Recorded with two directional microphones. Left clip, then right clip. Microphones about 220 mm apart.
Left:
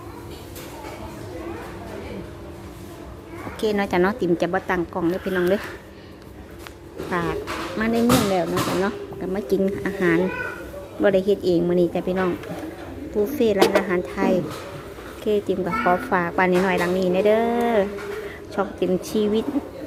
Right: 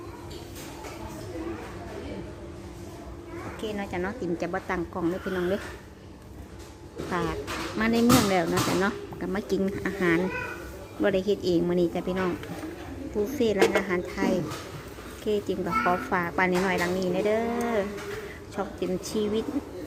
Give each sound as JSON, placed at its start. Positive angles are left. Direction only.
{"t": 3.6, "sound": "a woman's voice", "side_deg": 30}
{"t": 7.1, "sound": "a woman's voice", "side_deg": 5}